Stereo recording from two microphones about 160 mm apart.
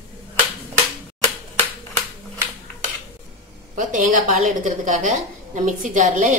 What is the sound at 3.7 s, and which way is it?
Speech, 55° right (ahead or behind).